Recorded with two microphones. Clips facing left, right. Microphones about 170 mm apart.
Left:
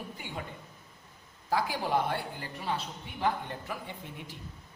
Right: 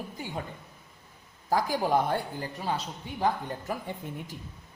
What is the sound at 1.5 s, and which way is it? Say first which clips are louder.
A man's voice: right 4 dB; 45° right (ahead or behind).